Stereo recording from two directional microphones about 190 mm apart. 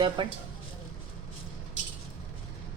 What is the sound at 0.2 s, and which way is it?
Speech, 25° right (ahead or behind).